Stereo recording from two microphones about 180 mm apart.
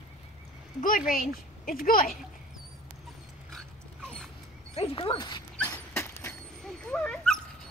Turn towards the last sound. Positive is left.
turn(degrees=5)  # may be behind; listen again after turning